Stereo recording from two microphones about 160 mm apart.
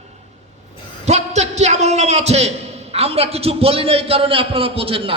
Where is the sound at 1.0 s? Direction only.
45° right (ahead or behind).